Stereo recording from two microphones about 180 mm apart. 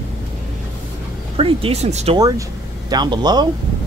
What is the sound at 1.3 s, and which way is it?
Speech, 35° right (ahead or behind).